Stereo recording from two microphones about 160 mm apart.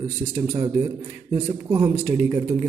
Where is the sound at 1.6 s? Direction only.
15° right (ahead or behind).